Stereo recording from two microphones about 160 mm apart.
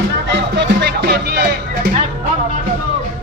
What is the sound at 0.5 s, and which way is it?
Music, 85° right.